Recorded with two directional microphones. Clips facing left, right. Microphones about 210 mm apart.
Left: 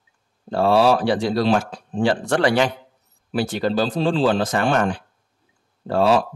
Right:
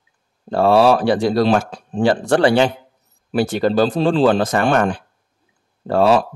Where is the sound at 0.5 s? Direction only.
55° right (ahead or behind).